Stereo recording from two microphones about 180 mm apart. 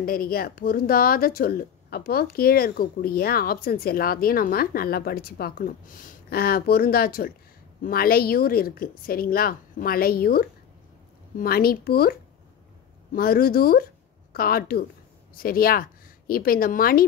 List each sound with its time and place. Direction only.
0.0 s speech: 55° left (ahead or behind)